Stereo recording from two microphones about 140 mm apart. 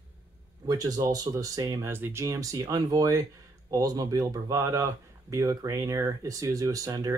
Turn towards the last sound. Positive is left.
turn(degrees=-25)  # may be behind; listen again after turning